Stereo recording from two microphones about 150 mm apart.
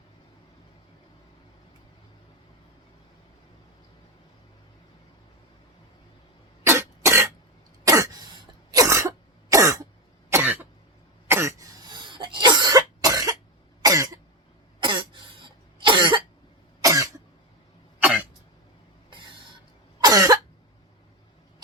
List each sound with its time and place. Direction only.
6.7 s cough: 20° right (ahead or behind)
18.0 s cough: 10° right (ahead or behind)
20.0 s cough: 25° right (ahead or behind)